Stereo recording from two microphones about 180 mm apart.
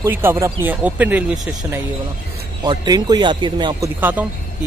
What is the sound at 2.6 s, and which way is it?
Speech, 25° right (ahead or behind).